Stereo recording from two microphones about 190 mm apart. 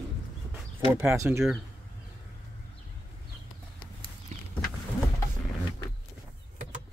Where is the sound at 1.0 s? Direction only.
15° right (ahead or behind).